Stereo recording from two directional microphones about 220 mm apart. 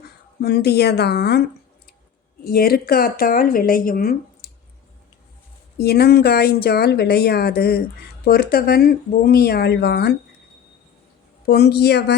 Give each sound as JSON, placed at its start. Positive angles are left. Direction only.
{"t": 0.4, "sound": "speech", "side_deg": 45}
{"t": 5.7, "sound": "speech", "side_deg": 45}
{"t": 11.4, "sound": "speech", "side_deg": 45}